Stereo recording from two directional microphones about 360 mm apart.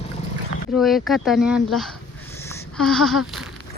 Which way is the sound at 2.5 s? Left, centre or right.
Centre.